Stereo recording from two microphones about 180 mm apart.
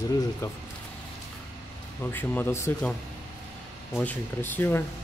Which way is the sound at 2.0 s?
10° left (ahead or behind).